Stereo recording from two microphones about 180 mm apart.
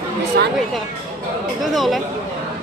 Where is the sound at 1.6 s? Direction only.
Centre (ahead or behind).